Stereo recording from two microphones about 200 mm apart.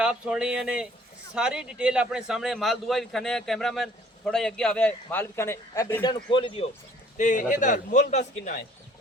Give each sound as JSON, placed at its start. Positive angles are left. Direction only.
{"t": 0.0, "sound": "a man's voice", "side_deg": -5}
{"t": 7.2, "sound": "a man's voice", "side_deg": 40}